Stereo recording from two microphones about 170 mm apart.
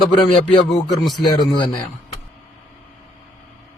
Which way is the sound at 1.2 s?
25° left (ahead or behind).